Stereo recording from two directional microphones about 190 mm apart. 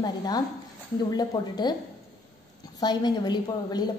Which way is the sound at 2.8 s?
20° left (ahead or behind).